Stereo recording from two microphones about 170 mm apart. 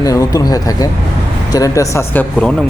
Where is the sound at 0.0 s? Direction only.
20° left (ahead or behind).